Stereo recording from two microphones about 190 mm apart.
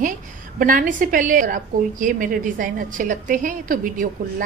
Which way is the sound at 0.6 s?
45° right (ahead or behind).